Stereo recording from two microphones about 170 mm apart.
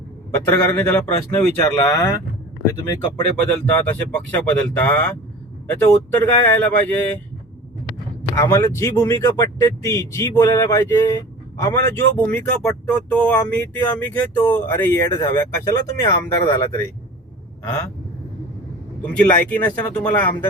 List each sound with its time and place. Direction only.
0.3 s speech: 15° left (ahead or behind)
3.3 s speech: 10° left (ahead or behind)
8.4 s speech: 15° left (ahead or behind)
11.8 s speech: 90° right
12.1 s speech: 10° left (ahead or behind)
19.0 s speech: 10° left (ahead or behind)